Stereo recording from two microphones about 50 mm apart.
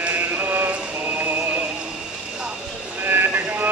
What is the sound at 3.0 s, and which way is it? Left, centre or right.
Vehicle, right.